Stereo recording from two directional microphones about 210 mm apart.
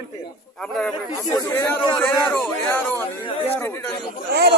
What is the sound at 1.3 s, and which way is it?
Speech, 15° left (ahead or behind).